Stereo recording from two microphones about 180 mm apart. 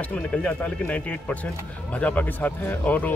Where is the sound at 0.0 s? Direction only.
5° left (ahead or behind).